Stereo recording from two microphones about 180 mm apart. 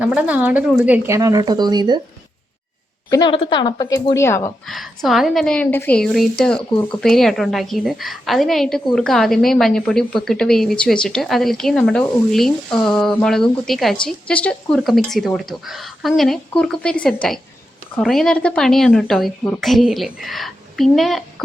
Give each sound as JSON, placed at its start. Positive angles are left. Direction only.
{"t": 0.0, "sound": "a woman's voice", "side_deg": -5}
{"t": 3.1, "sound": "speech", "side_deg": 25}
{"t": 4.7, "sound": "a woman's voice", "side_deg": 0}